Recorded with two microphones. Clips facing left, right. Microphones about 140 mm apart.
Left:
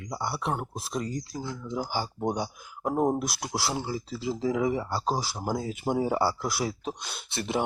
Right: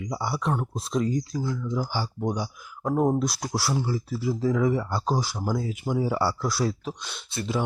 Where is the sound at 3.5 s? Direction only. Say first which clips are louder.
Right 1 dB; 20° left (ahead or behind).